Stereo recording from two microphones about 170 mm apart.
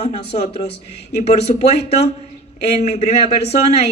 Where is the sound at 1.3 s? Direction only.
40° left (ahead or behind).